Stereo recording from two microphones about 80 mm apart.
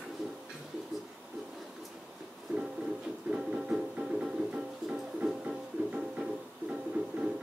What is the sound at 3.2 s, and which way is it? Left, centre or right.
Music, centre.